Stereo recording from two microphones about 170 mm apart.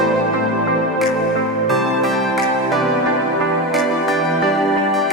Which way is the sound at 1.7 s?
Centre (ahead or behind).